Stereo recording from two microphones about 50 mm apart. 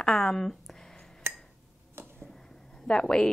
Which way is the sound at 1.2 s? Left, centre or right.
Right.